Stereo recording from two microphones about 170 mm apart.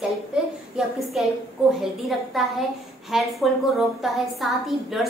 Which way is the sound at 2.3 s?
Centre (ahead or behind).